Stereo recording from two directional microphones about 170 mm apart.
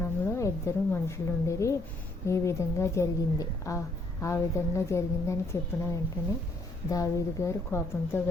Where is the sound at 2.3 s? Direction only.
15° left (ahead or behind).